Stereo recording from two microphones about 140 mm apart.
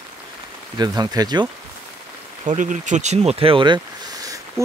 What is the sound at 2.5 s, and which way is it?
Speech, 65° right (ahead or behind).